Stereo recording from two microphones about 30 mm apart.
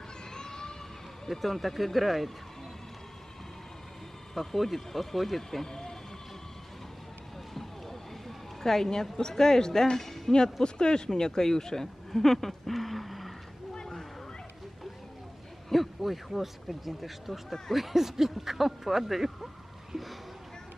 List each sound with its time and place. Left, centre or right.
0.3 s a sound: left
1.2 s speech: centre
4.4 s speech: centre
5.5 s speech: centre
8.6 s speech: centre
10.3 s speech: left; by 13.3 s centre
15.7 s speech: centre